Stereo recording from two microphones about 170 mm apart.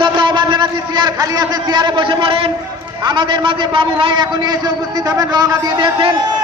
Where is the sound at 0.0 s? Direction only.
30° right (ahead or behind).